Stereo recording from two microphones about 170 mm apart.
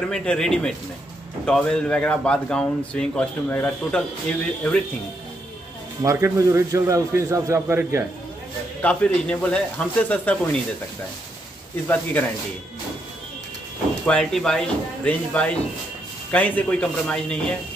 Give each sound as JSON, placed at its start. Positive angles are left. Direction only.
{"t": 0.1, "sound": "speech", "side_deg": 5}
{"t": 6.0, "sound": "a man's voice", "side_deg": -15}
{"t": 8.8, "sound": "speech", "side_deg": 5}
{"t": 11.9, "sound": "speech", "side_deg": 10}
{"t": 14.0, "sound": "speech", "side_deg": 5}